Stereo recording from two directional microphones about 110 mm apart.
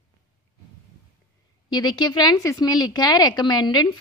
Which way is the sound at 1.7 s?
40° left (ahead or behind).